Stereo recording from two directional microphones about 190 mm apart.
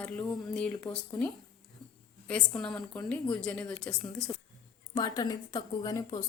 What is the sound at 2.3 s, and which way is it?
Speech, 5° left (ahead or behind).